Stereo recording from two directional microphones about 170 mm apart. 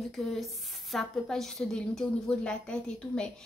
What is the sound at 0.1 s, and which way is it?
A woman's voice, centre (ahead or behind).